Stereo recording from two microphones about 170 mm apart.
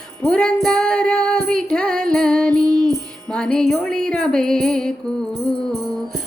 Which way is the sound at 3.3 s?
5° left (ahead or behind).